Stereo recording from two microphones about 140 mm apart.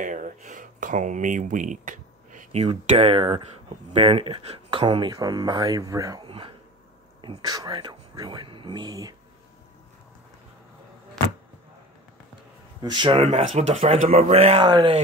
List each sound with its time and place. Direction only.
0.0 s a sound: 65° right (ahead or behind)
3.0 s speech: 40° right (ahead or behind); by 6.2 s 25° right (ahead or behind)
6.2 s speech: 40° right (ahead or behind)
12.8 s speech: 35° right (ahead or behind)
13.2 s speech: 45° right (ahead or behind)
13.5 s speech: 60° right (ahead or behind)
14.6 s speech: 30° right (ahead or behind)